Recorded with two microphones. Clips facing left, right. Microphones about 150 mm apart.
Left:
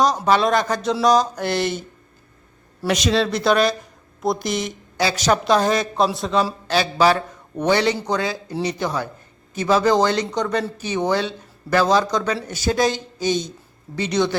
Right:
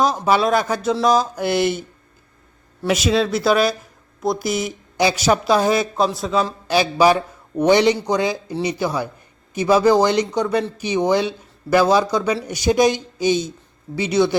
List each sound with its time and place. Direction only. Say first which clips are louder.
0.3 s speech: right 1 dB; 5° right (ahead or behind)
2.8 s speech: right 1 dB; 5° right (ahead or behind)
6.7 s speech: right 4 dB; 15° right (ahead or behind)